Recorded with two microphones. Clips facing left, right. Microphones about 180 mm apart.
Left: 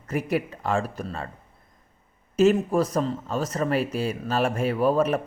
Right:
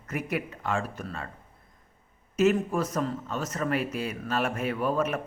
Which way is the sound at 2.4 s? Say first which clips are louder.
Left 4 dB; 30° left (ahead or behind).